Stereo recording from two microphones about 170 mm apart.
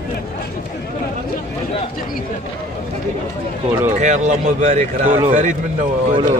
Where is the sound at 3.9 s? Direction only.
45° right (ahead or behind).